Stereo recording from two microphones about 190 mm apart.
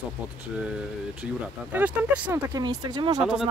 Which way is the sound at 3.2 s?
5° right (ahead or behind).